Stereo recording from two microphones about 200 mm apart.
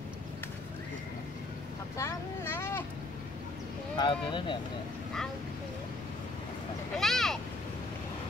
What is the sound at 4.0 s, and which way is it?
Speech, 25° left (ahead or behind).